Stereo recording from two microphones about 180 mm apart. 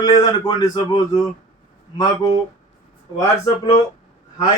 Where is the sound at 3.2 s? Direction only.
15° left (ahead or behind).